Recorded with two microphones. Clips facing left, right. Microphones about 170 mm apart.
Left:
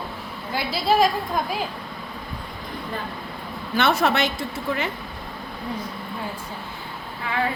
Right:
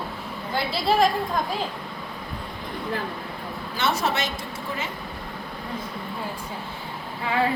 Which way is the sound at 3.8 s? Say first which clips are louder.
Left 5 dB; 60° left (ahead or behind).